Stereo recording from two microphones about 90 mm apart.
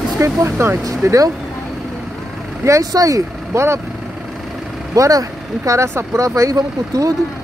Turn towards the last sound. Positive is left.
turn(degrees=-40)  # may be behind; listen again after turning